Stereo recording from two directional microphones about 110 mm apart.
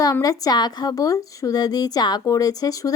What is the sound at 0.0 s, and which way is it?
A woman's voice, 35° left (ahead or behind).